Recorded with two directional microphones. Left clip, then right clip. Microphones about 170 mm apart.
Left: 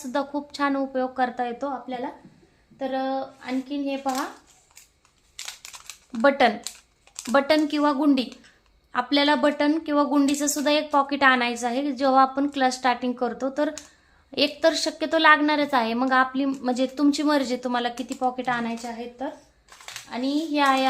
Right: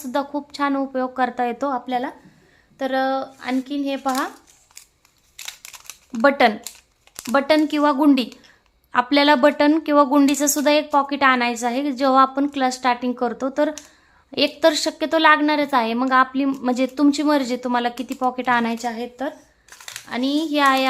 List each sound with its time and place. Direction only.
0.0 s a woman's voice: 15° right (ahead or behind)
1.5 s a woman's voice: 40° right (ahead or behind)
5.4 s crumpling: 5° right (ahead or behind)
6.2 s a woman's voice: 20° right (ahead or behind)